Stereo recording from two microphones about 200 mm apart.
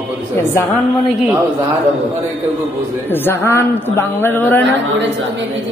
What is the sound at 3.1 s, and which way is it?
A woman's voice, 10° left (ahead or behind).